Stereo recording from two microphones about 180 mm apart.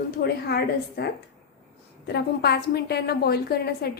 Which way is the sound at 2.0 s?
65° left (ahead or behind).